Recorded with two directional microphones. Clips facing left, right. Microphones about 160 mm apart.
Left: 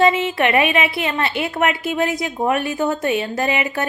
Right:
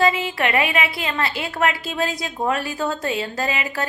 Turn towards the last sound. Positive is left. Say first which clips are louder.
# left 4 dB
turn(degrees=25)  # may be behind; listen again after turning